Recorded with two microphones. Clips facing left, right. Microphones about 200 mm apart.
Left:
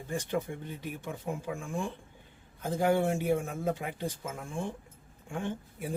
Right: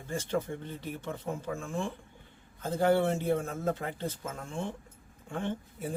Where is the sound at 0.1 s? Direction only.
15° left (ahead or behind).